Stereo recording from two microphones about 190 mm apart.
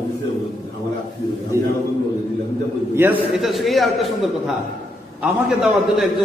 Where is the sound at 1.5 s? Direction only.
15° right (ahead or behind).